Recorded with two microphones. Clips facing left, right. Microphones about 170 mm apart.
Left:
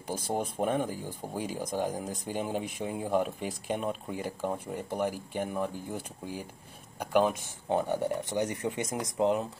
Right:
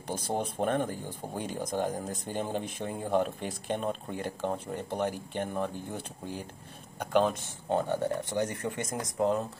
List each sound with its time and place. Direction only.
0.3 s speech: 5° left (ahead or behind)